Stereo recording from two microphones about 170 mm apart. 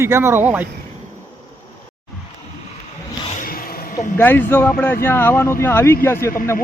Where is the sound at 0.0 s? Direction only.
15° right (ahead or behind).